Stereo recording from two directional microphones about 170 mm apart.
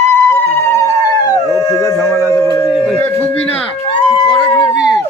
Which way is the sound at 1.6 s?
20° left (ahead or behind).